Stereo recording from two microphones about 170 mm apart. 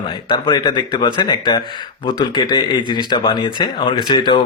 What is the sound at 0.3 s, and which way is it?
Speech, 25° left (ahead or behind).